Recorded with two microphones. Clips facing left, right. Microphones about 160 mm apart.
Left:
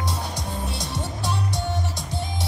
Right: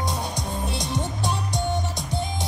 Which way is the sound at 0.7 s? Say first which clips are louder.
Right 3 dB; 20° right (ahead or behind).